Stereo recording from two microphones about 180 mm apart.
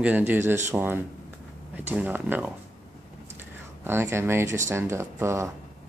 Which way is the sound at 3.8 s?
15° right (ahead or behind).